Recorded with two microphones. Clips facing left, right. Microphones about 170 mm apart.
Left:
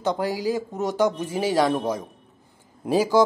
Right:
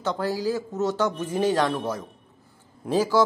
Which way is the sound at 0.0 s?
15° left (ahead or behind).